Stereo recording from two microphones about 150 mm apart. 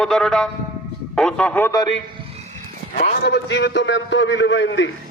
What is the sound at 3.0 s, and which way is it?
Speech, 90° left.